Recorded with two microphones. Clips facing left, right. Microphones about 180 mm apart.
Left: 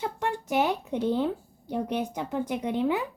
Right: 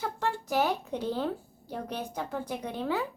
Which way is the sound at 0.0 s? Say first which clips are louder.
Left 2 dB; 20° left (ahead or behind).